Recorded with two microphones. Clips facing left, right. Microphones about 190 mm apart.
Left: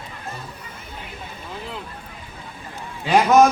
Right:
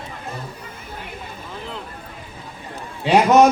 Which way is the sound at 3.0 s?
25° right (ahead or behind).